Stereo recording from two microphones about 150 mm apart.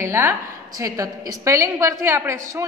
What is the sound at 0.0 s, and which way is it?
A woman's voice, 15° right (ahead or behind).